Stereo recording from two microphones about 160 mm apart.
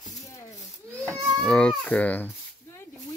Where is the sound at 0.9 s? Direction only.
20° right (ahead or behind).